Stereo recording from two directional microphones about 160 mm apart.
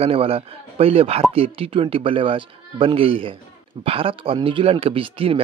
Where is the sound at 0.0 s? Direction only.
35° right (ahead or behind).